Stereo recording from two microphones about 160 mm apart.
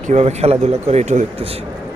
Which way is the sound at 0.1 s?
45° right (ahead or behind).